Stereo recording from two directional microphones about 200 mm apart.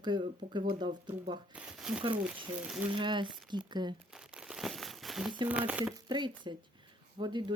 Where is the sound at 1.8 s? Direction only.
Centre (ahead or behind).